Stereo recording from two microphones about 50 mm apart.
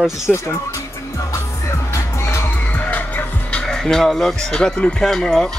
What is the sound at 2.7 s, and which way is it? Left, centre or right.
Music, left.